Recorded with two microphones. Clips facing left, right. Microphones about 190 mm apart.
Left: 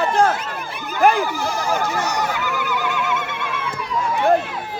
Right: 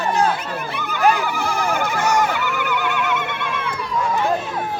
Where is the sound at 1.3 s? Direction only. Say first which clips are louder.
Even; 60° right (ahead or behind).